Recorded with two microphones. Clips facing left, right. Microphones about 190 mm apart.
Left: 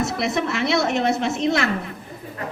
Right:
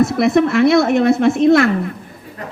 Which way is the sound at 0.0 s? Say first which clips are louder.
Right 10 dB; 55° right (ahead or behind).